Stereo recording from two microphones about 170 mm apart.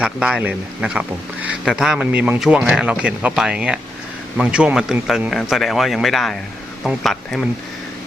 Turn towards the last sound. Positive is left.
turn(degrees=0)  # may be behind; listen again after turning